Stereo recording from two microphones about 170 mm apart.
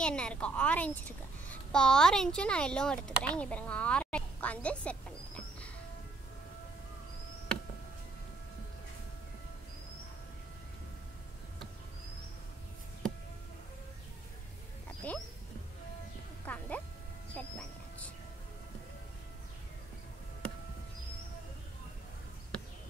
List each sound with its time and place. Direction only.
0.0 s a child's voice: 5° left (ahead or behind)
15.0 s a sound: 10° left (ahead or behind)
16.4 s music: 10° left (ahead or behind)